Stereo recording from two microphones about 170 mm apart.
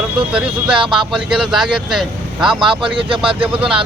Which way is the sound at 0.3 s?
5° right (ahead or behind).